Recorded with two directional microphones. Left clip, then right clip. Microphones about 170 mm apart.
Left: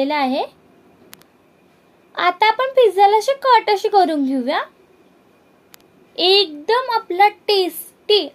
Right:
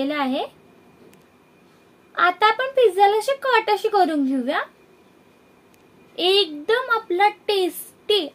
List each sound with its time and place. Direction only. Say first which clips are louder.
0.0 s speech: left 5 dB; 30° left (ahead or behind)
2.1 s speech: left 2 dB; 30° left (ahead or behind)
6.1 s a child's voice: left 4 dB; 25° left (ahead or behind)